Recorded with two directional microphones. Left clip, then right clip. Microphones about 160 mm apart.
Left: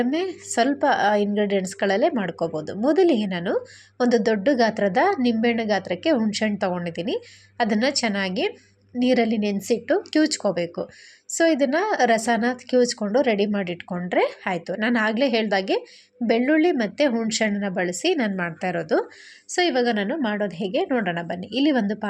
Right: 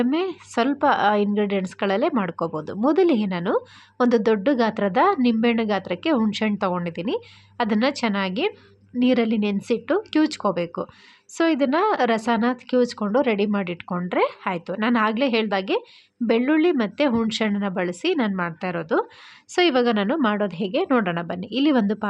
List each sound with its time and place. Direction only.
0.0 s a woman's voice: 10° right (ahead or behind)
6.1 s speech: 20° right (ahead or behind)
6.4 s a woman's voice: 10° right (ahead or behind)
19.5 s a woman's voice: 15° right (ahead or behind)